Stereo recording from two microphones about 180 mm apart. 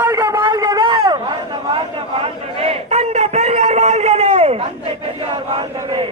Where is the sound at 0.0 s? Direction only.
15° right (ahead or behind).